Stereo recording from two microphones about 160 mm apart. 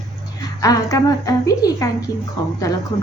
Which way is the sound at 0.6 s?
20° left (ahead or behind).